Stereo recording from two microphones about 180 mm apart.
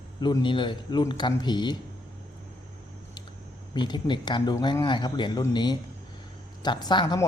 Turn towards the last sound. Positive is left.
turn(degrees=25)  # may be behind; listen again after turning